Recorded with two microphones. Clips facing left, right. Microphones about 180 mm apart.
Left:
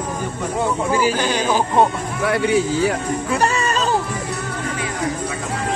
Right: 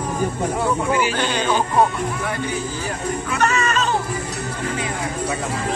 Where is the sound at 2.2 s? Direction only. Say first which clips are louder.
Left 7 dB; 75° left (ahead or behind).